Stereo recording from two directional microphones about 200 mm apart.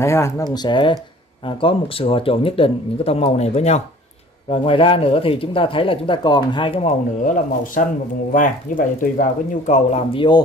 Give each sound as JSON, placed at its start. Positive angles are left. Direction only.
{"t": 0.0, "sound": "speech", "side_deg": 15}